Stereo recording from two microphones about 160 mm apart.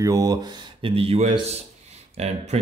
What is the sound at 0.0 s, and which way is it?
Speech, 20° right (ahead or behind).